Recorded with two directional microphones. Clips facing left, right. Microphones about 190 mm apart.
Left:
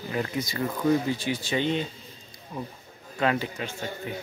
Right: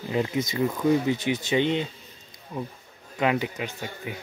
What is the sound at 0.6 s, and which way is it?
Speech, 10° right (ahead or behind).